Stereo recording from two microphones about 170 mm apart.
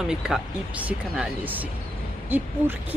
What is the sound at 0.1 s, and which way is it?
Speech, 5° right (ahead or behind).